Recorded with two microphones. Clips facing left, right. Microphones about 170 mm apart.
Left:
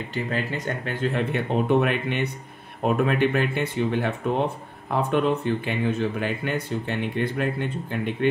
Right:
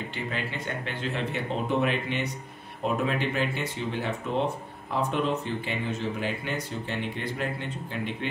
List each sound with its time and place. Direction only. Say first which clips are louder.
0.1 s speech: left 6 dB; 45° left (ahead or behind)